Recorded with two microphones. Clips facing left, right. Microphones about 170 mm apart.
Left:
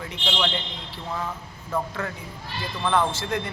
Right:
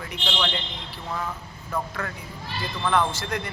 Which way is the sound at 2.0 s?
25° left (ahead or behind).